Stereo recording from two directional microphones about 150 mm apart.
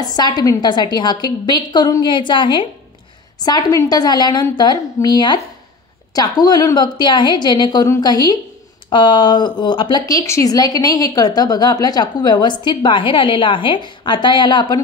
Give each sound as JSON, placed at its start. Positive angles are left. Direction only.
{"t": 0.0, "sound": "speech", "side_deg": 25}